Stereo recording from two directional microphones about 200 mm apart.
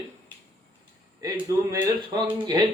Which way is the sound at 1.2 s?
25° right (ahead or behind).